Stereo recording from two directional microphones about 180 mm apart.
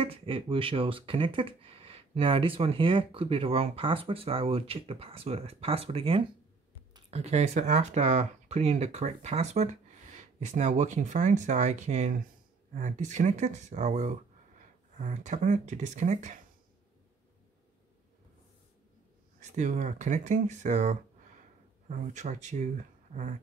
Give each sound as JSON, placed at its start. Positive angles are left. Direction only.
{"t": 0.0, "sound": "speech", "side_deg": -30}
{"t": 19.5, "sound": "speech", "side_deg": -45}